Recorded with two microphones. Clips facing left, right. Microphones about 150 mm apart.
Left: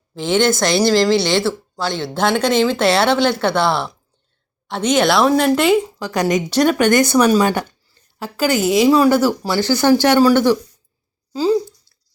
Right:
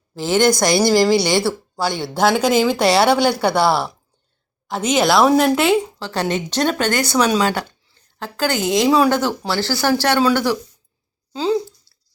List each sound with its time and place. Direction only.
0.1 s a woman's voice: 5° right (ahead or behind)
6.1 s speech: 15° left (ahead or behind)
11.3 s speech: 5° left (ahead or behind)